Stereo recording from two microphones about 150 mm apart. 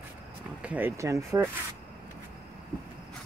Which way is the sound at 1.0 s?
20° right (ahead or behind).